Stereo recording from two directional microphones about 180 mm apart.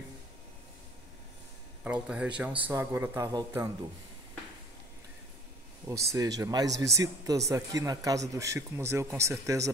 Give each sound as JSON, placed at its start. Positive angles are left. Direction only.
{"t": 1.9, "sound": "a man's voice", "side_deg": -5}
{"t": 5.9, "sound": "a man's voice", "side_deg": -20}